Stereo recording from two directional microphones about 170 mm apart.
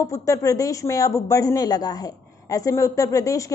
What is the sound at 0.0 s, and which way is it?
A woman's voice, 20° left (ahead or behind).